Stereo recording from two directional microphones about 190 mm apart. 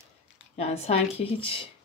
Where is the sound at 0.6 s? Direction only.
30° left (ahead or behind).